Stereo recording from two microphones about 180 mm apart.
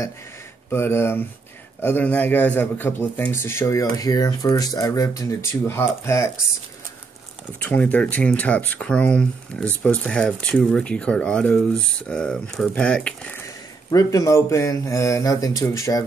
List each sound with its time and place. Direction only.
0.7 s speech: 15° left (ahead or behind)
7.6 s speech: 10° left (ahead or behind)
13.8 s speech: 20° left (ahead or behind)